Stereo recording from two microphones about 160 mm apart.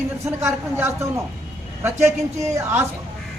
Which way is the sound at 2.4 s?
15° right (ahead or behind).